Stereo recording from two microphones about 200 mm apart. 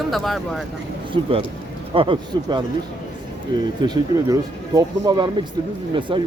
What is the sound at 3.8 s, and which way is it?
Speech, 20° right (ahead or behind).